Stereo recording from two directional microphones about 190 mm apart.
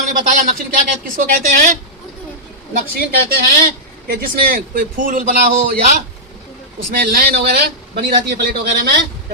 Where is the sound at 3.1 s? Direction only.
55° right (ahead or behind).